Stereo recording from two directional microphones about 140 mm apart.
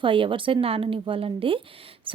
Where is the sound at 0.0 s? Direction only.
40° right (ahead or behind).